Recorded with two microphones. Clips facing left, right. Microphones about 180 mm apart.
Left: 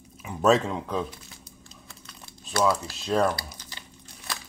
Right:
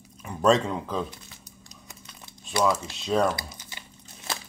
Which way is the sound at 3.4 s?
20° right (ahead or behind).